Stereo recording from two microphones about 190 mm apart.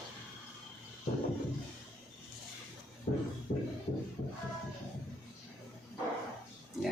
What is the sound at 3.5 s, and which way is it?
Music, 45° left (ahead or behind).